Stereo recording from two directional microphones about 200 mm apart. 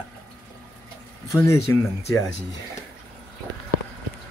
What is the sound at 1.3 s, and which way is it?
Speech, 15° left (ahead or behind).